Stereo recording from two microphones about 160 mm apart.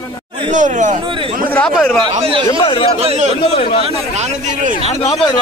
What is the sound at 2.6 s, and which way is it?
Speech, 35° left (ahead or behind).